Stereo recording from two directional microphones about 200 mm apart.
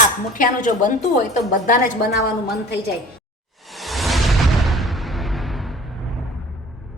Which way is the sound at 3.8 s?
Centre (ahead or behind).